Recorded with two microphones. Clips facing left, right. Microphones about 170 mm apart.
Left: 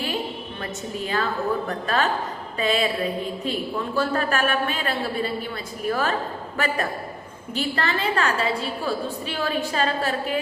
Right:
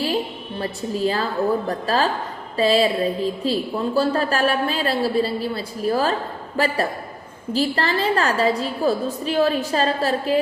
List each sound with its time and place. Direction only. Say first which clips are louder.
0.6 s a woman's voice: right 9 dB; 30° right (ahead or behind)